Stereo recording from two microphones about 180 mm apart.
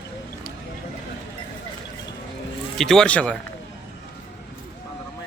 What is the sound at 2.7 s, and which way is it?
Speech, centre (ahead or behind).